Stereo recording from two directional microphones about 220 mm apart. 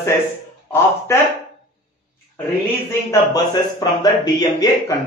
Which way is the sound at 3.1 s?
15° left (ahead or behind).